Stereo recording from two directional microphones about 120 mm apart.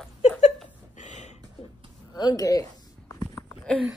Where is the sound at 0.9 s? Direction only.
80° left.